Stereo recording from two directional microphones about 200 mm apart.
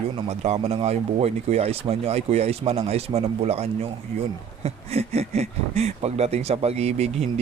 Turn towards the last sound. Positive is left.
turn(degrees=-30)  # may be behind; listen again after turning